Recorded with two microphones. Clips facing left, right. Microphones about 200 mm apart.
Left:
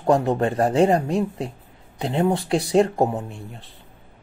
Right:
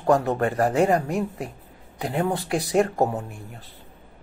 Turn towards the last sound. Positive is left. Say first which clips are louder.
# left 3 dB
turn(degrees=30)  # may be behind; listen again after turning